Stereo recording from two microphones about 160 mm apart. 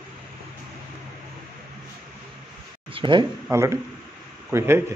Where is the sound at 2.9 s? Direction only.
30° right (ahead or behind).